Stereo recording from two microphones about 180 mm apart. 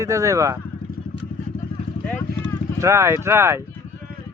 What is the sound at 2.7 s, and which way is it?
Speech, 15° right (ahead or behind).